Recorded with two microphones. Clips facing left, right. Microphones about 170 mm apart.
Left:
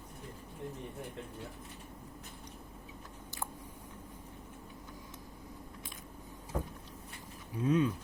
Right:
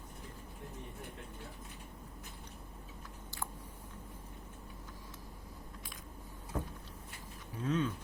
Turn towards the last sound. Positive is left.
turn(degrees=15)  # may be behind; listen again after turning